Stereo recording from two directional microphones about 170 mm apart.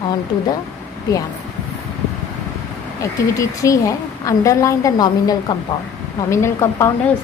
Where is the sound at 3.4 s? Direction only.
20° left (ahead or behind).